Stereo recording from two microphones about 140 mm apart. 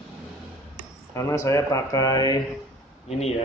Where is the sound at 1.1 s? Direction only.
20° left (ahead or behind).